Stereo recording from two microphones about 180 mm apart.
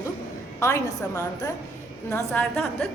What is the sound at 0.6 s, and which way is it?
A woman's voice, 15° left (ahead or behind).